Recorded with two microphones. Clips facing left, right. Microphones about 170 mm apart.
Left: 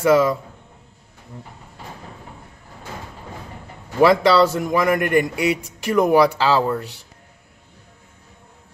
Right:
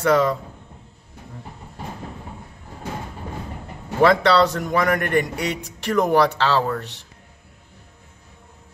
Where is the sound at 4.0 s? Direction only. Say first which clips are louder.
Left 2 dB; 5° left (ahead or behind).